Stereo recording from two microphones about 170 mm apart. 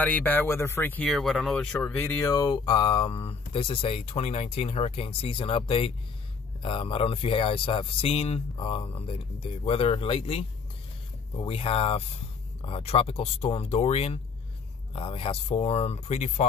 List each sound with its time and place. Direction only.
0.0 s speech: 10° left (ahead or behind); by 16.4 s 40° left (ahead or behind)